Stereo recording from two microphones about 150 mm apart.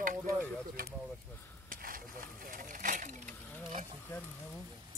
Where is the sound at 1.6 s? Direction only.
70° right (ahead or behind).